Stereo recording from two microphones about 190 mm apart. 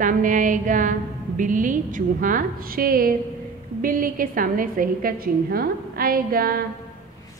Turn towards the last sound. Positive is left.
turn(degrees=-50)  # may be behind; listen again after turning